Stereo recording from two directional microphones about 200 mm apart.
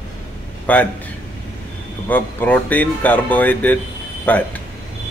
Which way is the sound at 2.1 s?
10° left (ahead or behind).